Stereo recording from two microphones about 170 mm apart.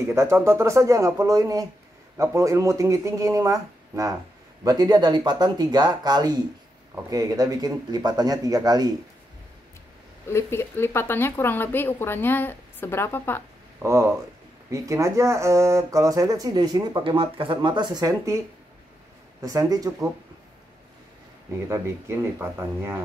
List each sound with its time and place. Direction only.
0.1 s speech: 15° right (ahead or behind)
10.3 s speech: 15° left (ahead or behind)
13.8 s speech: 10° right (ahead or behind)
19.4 s speech: 20° right (ahead or behind)
21.6 s speech: 15° right (ahead or behind)